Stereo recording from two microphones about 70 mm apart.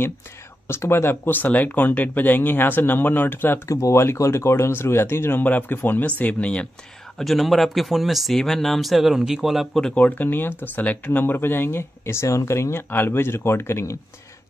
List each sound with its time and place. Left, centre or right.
0.7 s speech: left
3.6 s speech: left; by 6.7 s centre
7.2 s speech: centre
9.9 s speech: left